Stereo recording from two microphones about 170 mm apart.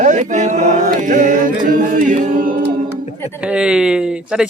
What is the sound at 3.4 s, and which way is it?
Speech, 5° right (ahead or behind).